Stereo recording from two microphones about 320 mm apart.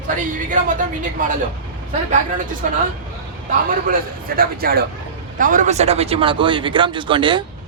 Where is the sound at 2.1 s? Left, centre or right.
Right.